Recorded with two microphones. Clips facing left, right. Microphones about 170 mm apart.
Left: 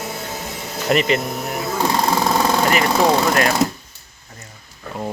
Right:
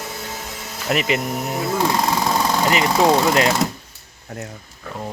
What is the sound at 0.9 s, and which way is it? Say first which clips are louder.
Speech: left 3 dB; 10° right (ahead or behind).